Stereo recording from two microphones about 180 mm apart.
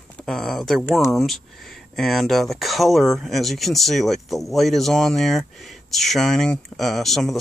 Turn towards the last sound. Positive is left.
turn(degrees=0)  # may be behind; listen again after turning